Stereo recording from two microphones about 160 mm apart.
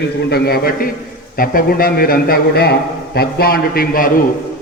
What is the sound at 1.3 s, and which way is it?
A man's voice, 65° left (ahead or behind).